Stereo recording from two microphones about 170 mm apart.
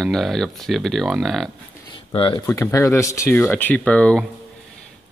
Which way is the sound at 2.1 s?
30° left (ahead or behind).